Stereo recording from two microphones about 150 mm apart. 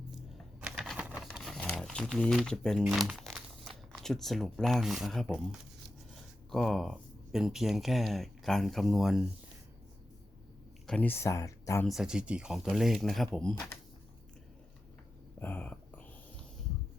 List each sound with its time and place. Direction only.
0.6 s crumpling: 5° right (ahead or behind)
2.9 s speech: centre (ahead or behind)
10.8 s speech: 10° left (ahead or behind)
11.9 s speech: 5° right (ahead or behind)
15.4 s a sound: 15° left (ahead or behind)